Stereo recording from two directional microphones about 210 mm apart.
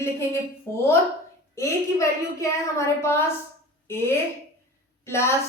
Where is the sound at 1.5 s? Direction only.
15° left (ahead or behind).